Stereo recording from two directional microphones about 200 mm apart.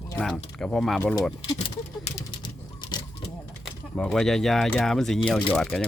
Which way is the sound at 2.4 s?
20° left (ahead or behind).